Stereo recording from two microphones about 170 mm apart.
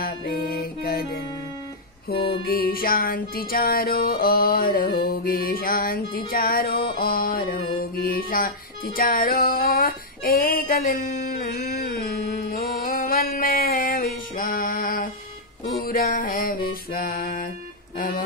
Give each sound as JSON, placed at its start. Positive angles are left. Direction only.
{"t": 0.0, "sound": "music", "side_deg": 65}
{"t": 2.4, "sound": "music", "side_deg": 60}